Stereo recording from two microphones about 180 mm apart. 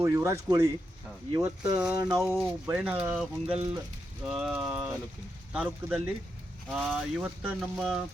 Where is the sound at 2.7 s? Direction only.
5° right (ahead or behind).